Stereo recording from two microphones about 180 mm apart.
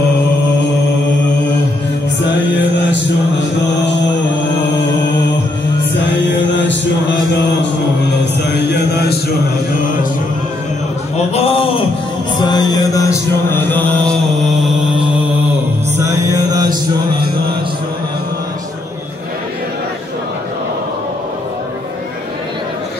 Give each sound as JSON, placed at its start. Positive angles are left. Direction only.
{"t": 6.5, "sound": "chant", "side_deg": 80}
{"t": 11.3, "sound": "a sound", "side_deg": 30}
{"t": 12.4, "sound": "music", "side_deg": 25}
{"t": 16.0, "sound": "music", "side_deg": -20}